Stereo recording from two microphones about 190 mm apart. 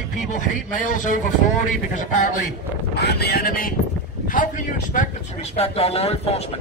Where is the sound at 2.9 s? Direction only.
60° left (ahead or behind); by 6.5 s 30° left (ahead or behind).